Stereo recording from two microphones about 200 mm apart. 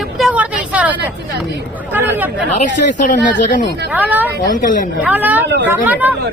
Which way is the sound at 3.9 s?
10° right (ahead or behind).